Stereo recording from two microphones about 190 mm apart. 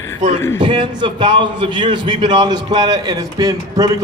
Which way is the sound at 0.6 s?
25° right (ahead or behind).